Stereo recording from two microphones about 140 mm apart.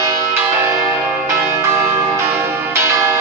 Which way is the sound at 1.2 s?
15° right (ahead or behind).